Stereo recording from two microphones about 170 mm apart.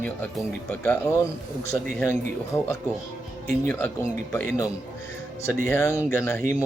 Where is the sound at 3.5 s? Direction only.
10° left (ahead or behind).